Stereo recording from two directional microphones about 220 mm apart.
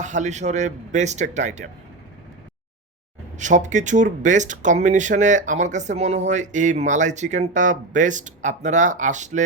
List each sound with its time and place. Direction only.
0.0 s speech: 35° right (ahead or behind)
3.3 s speech: 35° right (ahead or behind)